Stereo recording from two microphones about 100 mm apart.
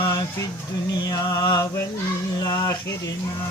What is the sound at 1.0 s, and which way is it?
Music, 40° left (ahead or behind).